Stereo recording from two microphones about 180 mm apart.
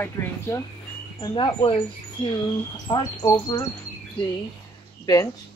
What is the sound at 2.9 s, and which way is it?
Speech, 25° left (ahead or behind).